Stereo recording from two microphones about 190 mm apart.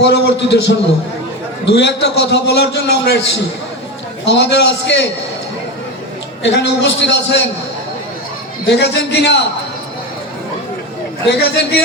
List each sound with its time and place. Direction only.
0.0 s a man's voice: 65° left (ahead or behind)
6.4 s a man's voice: 65° left (ahead or behind)
8.7 s a man's voice: 65° left (ahead or behind)
11.3 s a man's voice: 60° left (ahead or behind)